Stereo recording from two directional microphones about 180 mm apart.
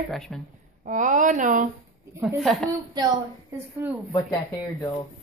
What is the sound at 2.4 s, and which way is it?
Speech, 5° left (ahead or behind).